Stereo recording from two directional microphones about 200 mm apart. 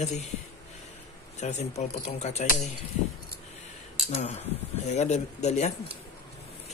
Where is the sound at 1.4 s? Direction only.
35° left (ahead or behind).